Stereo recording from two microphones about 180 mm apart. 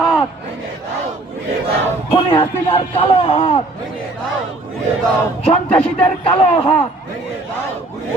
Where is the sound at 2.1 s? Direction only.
30° left (ahead or behind).